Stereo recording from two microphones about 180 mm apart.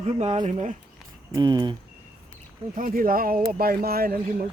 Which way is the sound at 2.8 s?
50° right (ahead or behind).